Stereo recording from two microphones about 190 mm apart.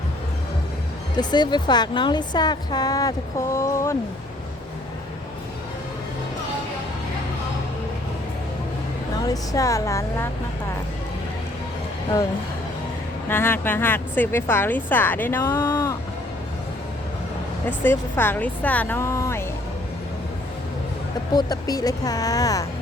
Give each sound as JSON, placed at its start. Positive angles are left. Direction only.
{"t": 1.1, "sound": "a woman's voice", "side_deg": 25}
{"t": 9.2, "sound": "a woman's voice", "side_deg": 20}
{"t": 13.2, "sound": "a woman's voice", "side_deg": 10}
{"t": 17.7, "sound": "a woman's voice", "side_deg": 10}
{"t": 21.3, "sound": "a woman's voice", "side_deg": 20}